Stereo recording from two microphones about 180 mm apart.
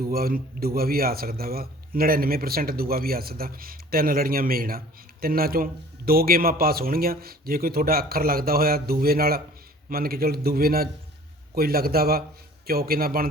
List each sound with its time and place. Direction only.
0.0 s a man's voice: 55° right (ahead or behind)